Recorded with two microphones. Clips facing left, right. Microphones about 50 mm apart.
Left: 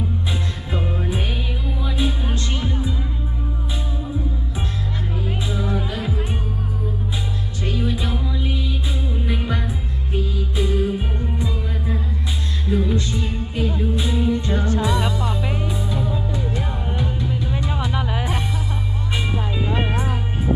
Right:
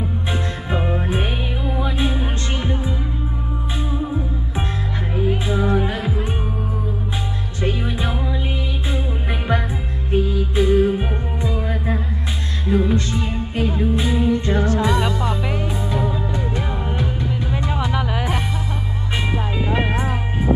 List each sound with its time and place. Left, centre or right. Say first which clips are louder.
0.7 s music: right 3 dB; right
5.1 s music: right 8 dB; right
7.6 s music: right 2 dB; right
13.6 s music: right 3 dB; right
15.2 s music: right 2 dB; right
16.0 s music: right 2 dB; right